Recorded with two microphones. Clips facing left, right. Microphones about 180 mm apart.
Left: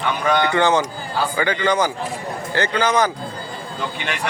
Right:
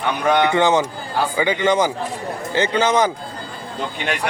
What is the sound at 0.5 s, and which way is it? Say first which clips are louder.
A man's voice: right 1 dB; 20° right (ahead or behind).